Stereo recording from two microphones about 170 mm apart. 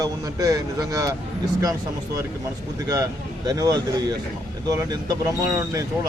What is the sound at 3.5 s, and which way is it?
Speech, 20° right (ahead or behind).